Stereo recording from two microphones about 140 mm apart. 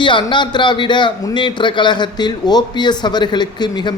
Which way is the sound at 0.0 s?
35° left (ahead or behind).